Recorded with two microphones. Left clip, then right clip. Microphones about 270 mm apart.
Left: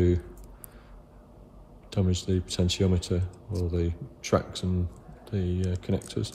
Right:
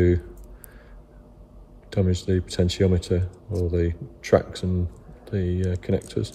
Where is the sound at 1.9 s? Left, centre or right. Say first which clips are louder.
Right 5 dB; centre.